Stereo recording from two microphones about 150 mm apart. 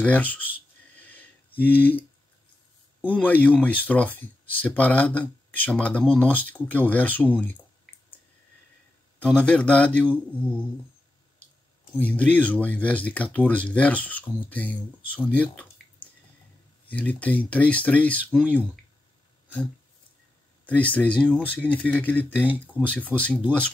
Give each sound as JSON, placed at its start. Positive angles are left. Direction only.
{"t": 0.0, "sound": "speech", "side_deg": 10}
{"t": 0.9, "sound": "sniff", "side_deg": 10}
{"t": 1.6, "sound": "speech", "side_deg": 10}
{"t": 3.0, "sound": "a man's voice", "side_deg": -10}
{"t": 3.3, "sound": "speech", "side_deg": 10}
{"t": 9.2, "sound": "speech", "side_deg": 5}
{"t": 12.0, "sound": "speech", "side_deg": 10}
{"t": 15.2, "sound": "drip", "side_deg": 10}
{"t": 16.8, "sound": "speech", "side_deg": 10}
{"t": 20.6, "sound": "speech", "side_deg": 10}
{"t": 22.2, "sound": "speech", "side_deg": -10}
{"t": 22.8, "sound": "speech", "side_deg": 10}